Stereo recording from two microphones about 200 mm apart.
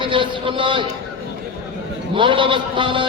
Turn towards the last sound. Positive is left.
turn(degrees=-25)  # may be behind; listen again after turning